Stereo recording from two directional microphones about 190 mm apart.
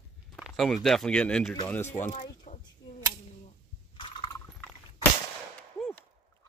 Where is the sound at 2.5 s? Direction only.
30° left (ahead or behind).